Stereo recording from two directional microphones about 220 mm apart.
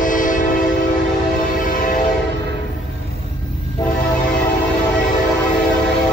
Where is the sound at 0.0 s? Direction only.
35° left (ahead or behind).